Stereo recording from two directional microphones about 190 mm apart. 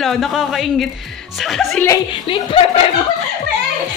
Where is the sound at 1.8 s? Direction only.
20° left (ahead or behind).